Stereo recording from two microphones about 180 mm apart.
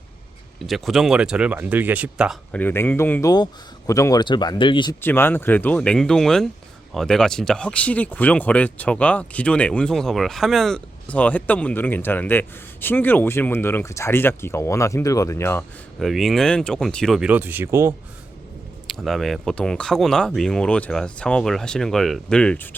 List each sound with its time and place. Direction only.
0.7 s speech: centre (ahead or behind)
2.5 s speech: 10° left (ahead or behind); by 4.9 s 25° left (ahead or behind)
4.9 s speech: 10° left (ahead or behind)
16.0 s speech: centre (ahead or behind)
18.9 s speech: centre (ahead or behind)